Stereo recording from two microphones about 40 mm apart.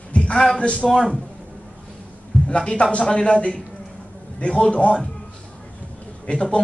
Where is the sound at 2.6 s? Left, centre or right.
Left.